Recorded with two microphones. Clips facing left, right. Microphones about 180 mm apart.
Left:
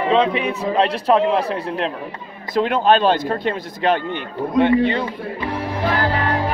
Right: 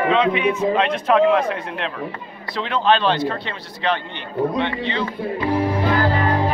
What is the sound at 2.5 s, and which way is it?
Speech, 45° left (ahead or behind).